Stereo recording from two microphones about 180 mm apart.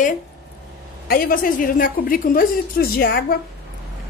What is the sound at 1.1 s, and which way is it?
A woman's voice, 50° left (ahead or behind).